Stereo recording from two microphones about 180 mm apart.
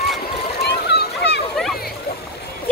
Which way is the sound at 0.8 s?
65° left (ahead or behind).